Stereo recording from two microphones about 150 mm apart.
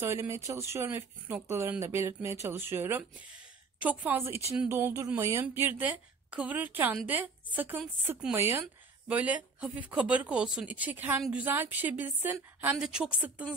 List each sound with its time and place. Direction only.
0.0 s a woman's voice: 15° right (ahead or behind)